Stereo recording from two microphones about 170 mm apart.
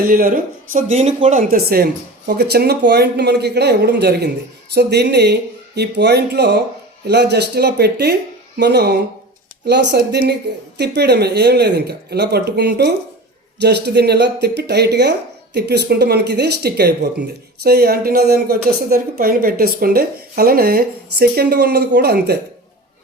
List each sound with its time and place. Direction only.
0.1 s speech: 60° right (ahead or behind)